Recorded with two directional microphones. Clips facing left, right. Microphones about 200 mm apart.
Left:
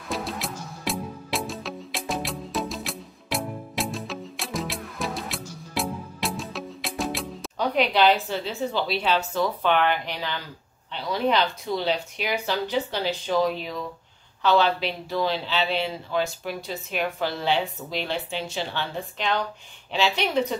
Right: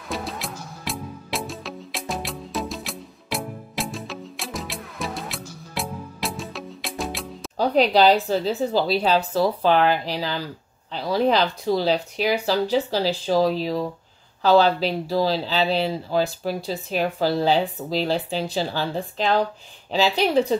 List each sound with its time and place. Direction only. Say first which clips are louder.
0.1 s music: even; centre (ahead or behind)
7.5 s speech: right 5 dB; 35° right (ahead or behind)